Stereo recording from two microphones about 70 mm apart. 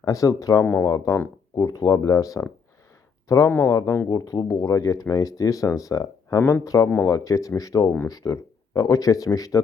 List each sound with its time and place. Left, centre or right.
0.0 s speech: left
0.6 s speech: left
0.9 s speech: left
4.1 s a man's voice: left